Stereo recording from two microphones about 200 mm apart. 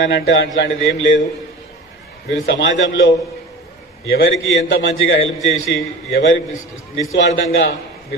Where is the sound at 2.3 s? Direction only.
65° left (ahead or behind).